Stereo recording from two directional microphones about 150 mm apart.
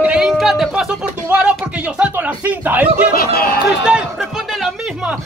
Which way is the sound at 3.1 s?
90° left.